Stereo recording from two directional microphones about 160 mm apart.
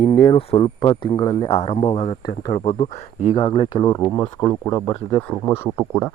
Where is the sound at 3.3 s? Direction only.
35° left (ahead or behind).